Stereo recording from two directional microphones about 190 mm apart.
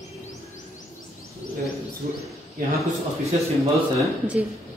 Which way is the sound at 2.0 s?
40° right (ahead or behind).